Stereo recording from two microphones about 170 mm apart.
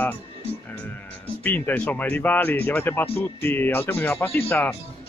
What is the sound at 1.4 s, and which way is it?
Speech, 10° left (ahead or behind).